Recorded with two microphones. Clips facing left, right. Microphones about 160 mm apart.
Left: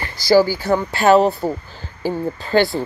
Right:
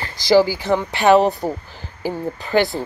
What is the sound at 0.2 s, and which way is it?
Speech, 20° right (ahead or behind).